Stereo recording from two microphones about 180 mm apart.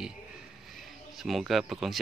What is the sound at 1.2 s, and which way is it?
Speech, centre (ahead or behind).